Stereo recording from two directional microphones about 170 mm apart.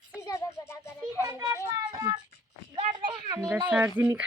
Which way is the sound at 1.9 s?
25° right (ahead or behind).